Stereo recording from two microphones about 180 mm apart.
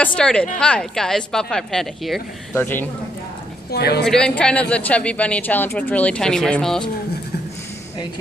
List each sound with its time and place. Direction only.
0.0 s speech: 5° left (ahead or behind)
3.7 s a woman's voice: 65° left (ahead or behind)
4.0 s speech: 5° left (ahead or behind)